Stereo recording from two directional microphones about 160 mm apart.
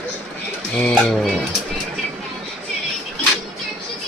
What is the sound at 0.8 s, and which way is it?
Speech, centre (ahead or behind).